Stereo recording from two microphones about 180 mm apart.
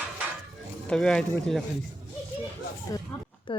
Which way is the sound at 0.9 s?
5° left (ahead or behind).